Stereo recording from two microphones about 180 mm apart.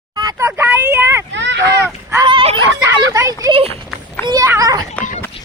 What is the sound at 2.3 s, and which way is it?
Speech, 30° right (ahead or behind).